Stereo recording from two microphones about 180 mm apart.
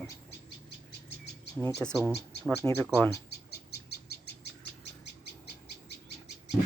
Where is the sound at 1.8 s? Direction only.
10° left (ahead or behind).